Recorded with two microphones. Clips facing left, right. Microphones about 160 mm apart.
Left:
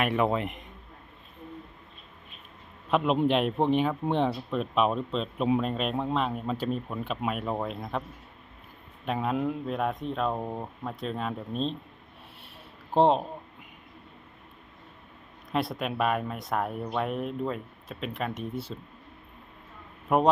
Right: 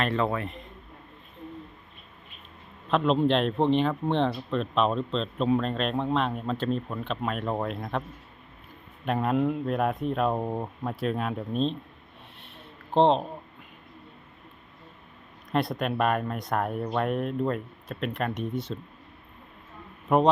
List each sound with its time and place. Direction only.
0.0 s speech: 15° left (ahead or behind)
2.9 s speech: 10° left (ahead or behind)
9.0 s speech: centre (ahead or behind)
12.9 s speech: 10° left (ahead or behind)
15.5 s speech: centre (ahead or behind)
20.1 s speech: 5° left (ahead or behind)